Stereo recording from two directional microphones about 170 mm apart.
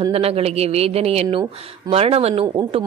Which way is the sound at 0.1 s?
35° right (ahead or behind).